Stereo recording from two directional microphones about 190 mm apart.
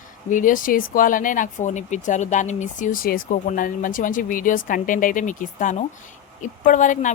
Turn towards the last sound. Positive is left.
turn(degrees=40)  # may be behind; listen again after turning